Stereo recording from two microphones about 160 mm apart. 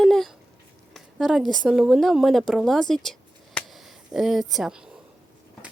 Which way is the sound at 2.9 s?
5° left (ahead or behind).